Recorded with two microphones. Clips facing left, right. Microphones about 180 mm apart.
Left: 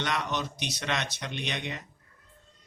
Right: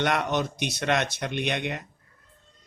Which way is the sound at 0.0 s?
55° right (ahead or behind).